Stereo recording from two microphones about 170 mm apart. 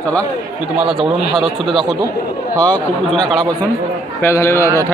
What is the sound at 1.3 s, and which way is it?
Speech, centre (ahead or behind).